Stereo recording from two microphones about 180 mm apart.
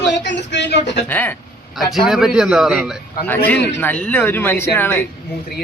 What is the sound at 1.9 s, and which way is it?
Speech, centre (ahead or behind).